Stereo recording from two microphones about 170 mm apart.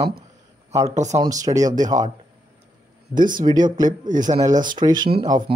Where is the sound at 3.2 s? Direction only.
25° right (ahead or behind).